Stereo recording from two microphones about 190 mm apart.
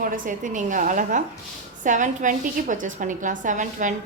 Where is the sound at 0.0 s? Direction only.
45° right (ahead or behind).